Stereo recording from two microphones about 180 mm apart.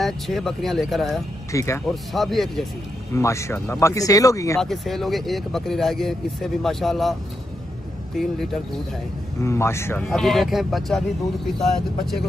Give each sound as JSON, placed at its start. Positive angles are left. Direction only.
{"t": 0.0, "sound": "speech", "side_deg": 0}
{"t": 1.5, "sound": "speech", "side_deg": 15}
{"t": 1.9, "sound": "speech", "side_deg": 0}
{"t": 3.2, "sound": "speech", "side_deg": 15}
{"t": 4.6, "sound": "speech", "side_deg": 0}
{"t": 9.4, "sound": "speech", "side_deg": 15}